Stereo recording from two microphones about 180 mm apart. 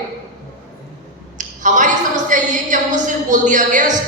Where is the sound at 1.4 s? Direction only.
45° right (ahead or behind).